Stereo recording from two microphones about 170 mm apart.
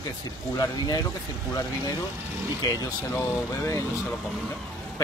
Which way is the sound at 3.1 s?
15° left (ahead or behind).